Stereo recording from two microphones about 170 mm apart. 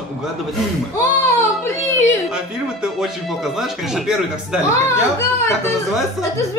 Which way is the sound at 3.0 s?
Centre (ahead or behind).